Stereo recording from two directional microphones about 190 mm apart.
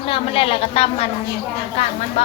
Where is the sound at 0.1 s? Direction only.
30° left (ahead or behind).